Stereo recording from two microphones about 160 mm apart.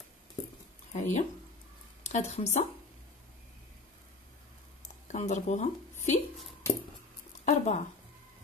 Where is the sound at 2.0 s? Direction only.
45° left (ahead or behind).